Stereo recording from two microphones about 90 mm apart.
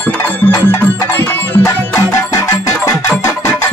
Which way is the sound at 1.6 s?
35° left (ahead or behind).